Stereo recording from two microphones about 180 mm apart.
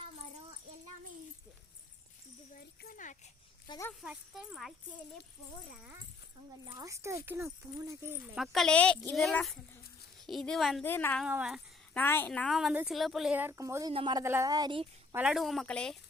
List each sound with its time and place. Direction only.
2.5 s a sound: 55° left (ahead or behind)
3.7 s speech: 15° left (ahead or behind)
4.0 s speech: 5° right (ahead or behind)
6.7 s speech: 15° right (ahead or behind)
8.4 s speech: centre (ahead or behind)
10.8 s speech: 10° left (ahead or behind)
11.2 s speech: 5° right (ahead or behind)
11.9 s a woman's voice: 10° left (ahead or behind); by 14.8 s 25° right (ahead or behind)
15.1 s speech: 5° right (ahead or behind)